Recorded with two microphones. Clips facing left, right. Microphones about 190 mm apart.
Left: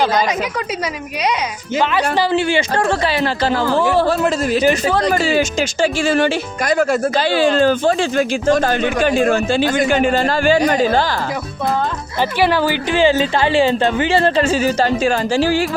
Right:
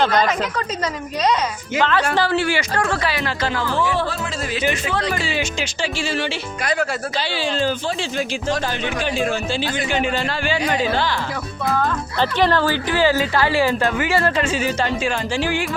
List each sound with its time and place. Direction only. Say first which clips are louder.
1.8 s speech: left 2 dB; 15° left (ahead or behind); by 11.2 s 40° left (ahead or behind)
12.4 s speech: left 2 dB; 10° left (ahead or behind)
12.9 s speech: left 4 dB; 25° left (ahead or behind)